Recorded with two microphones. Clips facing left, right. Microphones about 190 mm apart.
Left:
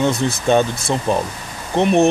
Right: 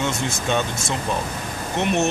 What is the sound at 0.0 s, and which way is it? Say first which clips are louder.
Speech: left 7 dB; 35° left (ahead or behind).